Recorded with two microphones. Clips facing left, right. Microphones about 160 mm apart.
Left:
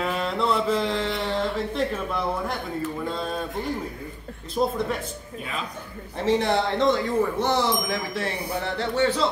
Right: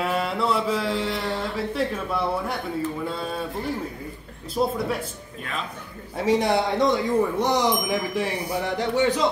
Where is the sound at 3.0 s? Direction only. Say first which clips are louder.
Even; 5° right (ahead or behind).